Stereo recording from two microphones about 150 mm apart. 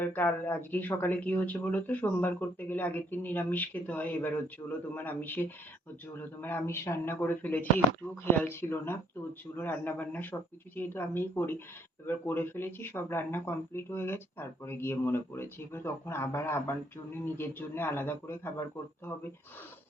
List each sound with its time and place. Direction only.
0.0 s speech: 10° left (ahead or behind)
4.6 s a man's voice: 20° left (ahead or behind)